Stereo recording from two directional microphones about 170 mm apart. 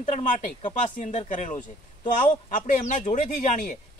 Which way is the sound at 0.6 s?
45° left (ahead or behind).